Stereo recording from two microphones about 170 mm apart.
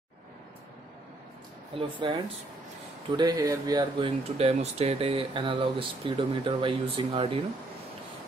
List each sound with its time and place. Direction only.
1.7 s speech: 30° right (ahead or behind)